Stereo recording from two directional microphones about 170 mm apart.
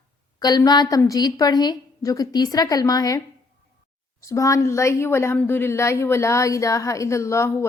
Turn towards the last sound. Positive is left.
turn(degrees=15)  # may be behind; listen again after turning